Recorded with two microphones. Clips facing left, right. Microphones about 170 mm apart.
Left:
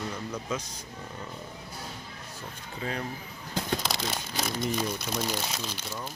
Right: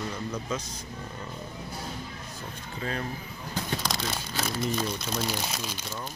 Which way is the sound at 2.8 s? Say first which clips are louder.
Right 1 dB; 15° left (ahead or behind).